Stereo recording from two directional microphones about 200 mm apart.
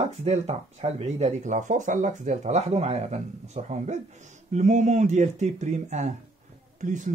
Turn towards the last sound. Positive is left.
turn(degrees=-40)  # may be behind; listen again after turning